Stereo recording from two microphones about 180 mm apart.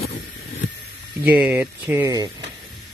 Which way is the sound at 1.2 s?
5° right (ahead or behind).